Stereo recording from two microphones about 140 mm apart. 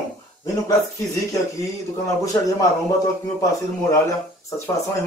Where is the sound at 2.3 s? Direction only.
25° left (ahead or behind).